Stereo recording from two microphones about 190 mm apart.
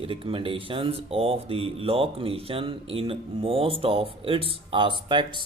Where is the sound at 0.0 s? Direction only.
30° right (ahead or behind).